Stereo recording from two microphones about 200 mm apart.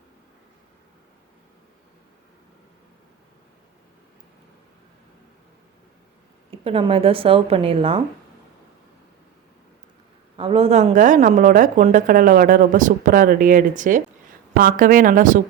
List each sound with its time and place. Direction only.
6.5 s speech: 30° right (ahead or behind)
10.3 s a woman's voice: 25° right (ahead or behind)